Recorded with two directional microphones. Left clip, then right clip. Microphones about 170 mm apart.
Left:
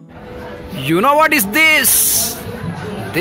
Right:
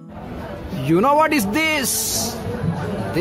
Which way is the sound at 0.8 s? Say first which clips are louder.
Left 4 dB; centre (ahead or behind).